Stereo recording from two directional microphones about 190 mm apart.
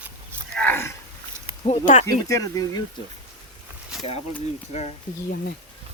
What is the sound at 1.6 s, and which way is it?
Speech, 40° left (ahead or behind).